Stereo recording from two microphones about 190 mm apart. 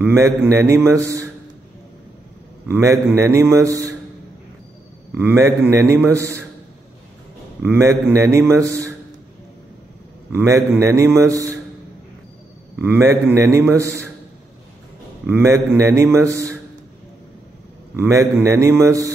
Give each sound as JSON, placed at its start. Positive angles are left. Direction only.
{"t": 0.0, "sound": "a man's voice", "side_deg": -10}
{"t": 2.7, "sound": "a man's voice", "side_deg": -15}
{"t": 5.1, "sound": "a man's voice", "side_deg": -10}
{"t": 7.6, "sound": "a man's voice", "side_deg": -15}
{"t": 10.3, "sound": "a man's voice", "side_deg": -15}
{"t": 12.8, "sound": "a man's voice", "side_deg": -10}
{"t": 15.2, "sound": "a man's voice", "side_deg": -10}
{"t": 17.9, "sound": "a man's voice", "side_deg": -15}